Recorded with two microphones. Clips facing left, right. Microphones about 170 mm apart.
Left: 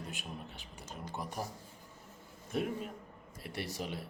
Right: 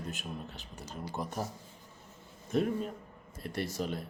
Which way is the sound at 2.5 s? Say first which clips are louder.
Right 5 dB; 5° left (ahead or behind).